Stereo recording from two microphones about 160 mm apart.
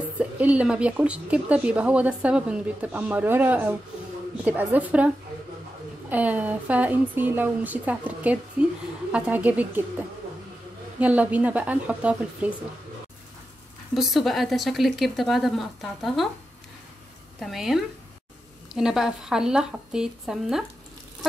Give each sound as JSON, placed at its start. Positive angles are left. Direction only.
{"t": 0.2, "sound": "speech", "side_deg": -10}
{"t": 13.9, "sound": "speech", "side_deg": 0}
{"t": 17.4, "sound": "speech", "side_deg": 0}